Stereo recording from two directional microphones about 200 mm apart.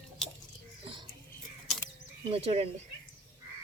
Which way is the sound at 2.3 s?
30° right (ahead or behind).